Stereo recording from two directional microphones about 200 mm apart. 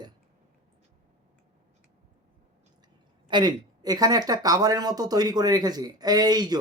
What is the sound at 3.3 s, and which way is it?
Speech, 20° right (ahead or behind).